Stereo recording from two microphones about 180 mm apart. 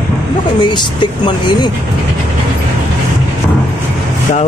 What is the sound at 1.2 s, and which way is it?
Speech, 25° left (ahead or behind).